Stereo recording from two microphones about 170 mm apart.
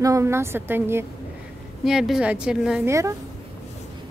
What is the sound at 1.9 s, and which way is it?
Speech, 5° right (ahead or behind).